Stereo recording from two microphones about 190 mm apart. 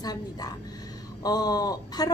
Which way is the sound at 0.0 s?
20° left (ahead or behind).